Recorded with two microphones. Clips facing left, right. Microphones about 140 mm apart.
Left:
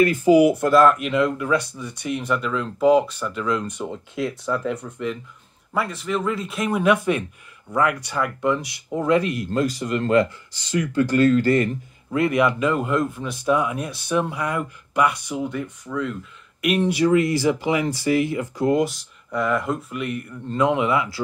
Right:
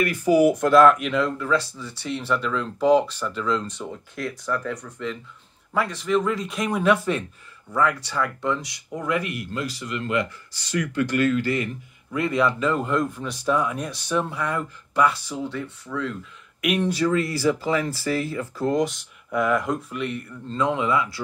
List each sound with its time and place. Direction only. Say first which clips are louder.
0.0 s speech: left 4 dB; 25° left (ahead or behind)
0.5 s speech: even; 5° left (ahead or behind)
3.7 s speech: left 5 dB; 20° left (ahead or behind)
5.7 s speech: right 1 dB; 5° left (ahead or behind)
8.9 s speech: left 6 dB; 30° left (ahead or behind)
9.2 s speech: left 5 dB; 10° right (ahead or behind)
9.8 s speech: left 6 dB; 45° left (ahead or behind)
10.5 s speech: left 3 dB; 25° left (ahead or behind); by 11.7 s 45° left (ahead or behind)
12.1 s speech: left 3 dB; 20° left (ahead or behind)